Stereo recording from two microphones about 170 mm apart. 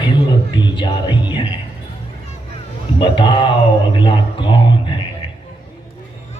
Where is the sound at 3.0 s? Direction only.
30° left (ahead or behind).